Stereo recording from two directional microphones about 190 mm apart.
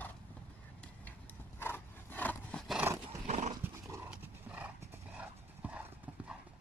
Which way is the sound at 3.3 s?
35° right (ahead or behind).